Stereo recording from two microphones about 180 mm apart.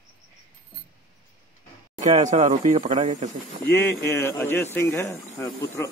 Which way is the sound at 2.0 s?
40° right (ahead or behind).